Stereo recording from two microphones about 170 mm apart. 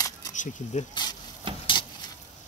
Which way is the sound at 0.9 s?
25° left (ahead or behind).